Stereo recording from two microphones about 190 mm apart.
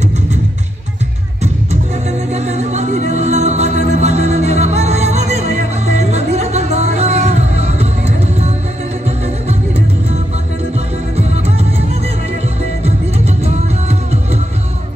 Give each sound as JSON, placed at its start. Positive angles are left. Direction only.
{"t": 1.4, "sound": "music", "side_deg": -35}
{"t": 12.8, "sound": "music", "side_deg": -35}